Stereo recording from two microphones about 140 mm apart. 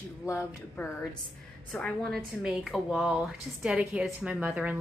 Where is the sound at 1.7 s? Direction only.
5° left (ahead or behind).